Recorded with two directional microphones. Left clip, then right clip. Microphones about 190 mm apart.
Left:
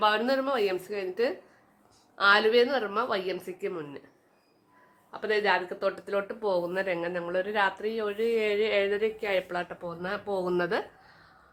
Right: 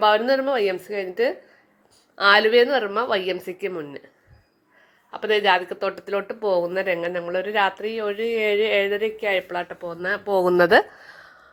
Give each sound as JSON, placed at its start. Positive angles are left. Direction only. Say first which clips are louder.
{"t": 0.0, "sound": "a woman's voice", "louder": "right 7 dB", "side_deg": -15}
{"t": 5.1, "sound": "speech", "louder": "right 7 dB", "side_deg": -25}
{"t": 10.0, "sound": "a woman's voice", "louder": "right 9 dB", "side_deg": -25}
{"t": 10.6, "sound": "a sound", "louder": "right 14 dB", "side_deg": -40}